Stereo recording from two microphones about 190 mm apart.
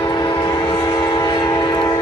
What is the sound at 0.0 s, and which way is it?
Train, 25° left (ahead or behind).